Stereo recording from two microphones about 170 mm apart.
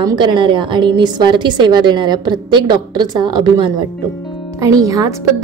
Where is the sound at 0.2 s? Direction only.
30° right (ahead or behind).